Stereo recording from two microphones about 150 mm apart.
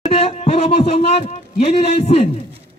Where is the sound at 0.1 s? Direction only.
40° left (ahead or behind).